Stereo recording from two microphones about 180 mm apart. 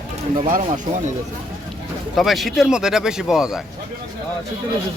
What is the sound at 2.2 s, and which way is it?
Speech, centre (ahead or behind).